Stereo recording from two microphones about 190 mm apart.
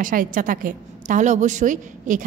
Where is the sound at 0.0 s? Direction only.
45° right (ahead or behind).